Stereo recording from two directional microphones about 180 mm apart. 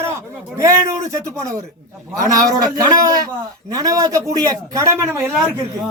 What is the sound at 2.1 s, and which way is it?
A man's voice, 20° right (ahead or behind).